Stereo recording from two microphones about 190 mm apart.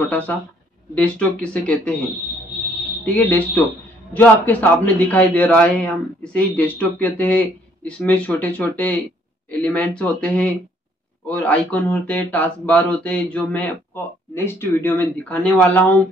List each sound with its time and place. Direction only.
0.9 s speech: 5° left (ahead or behind)
3.2 s a man's voice: 10° left (ahead or behind)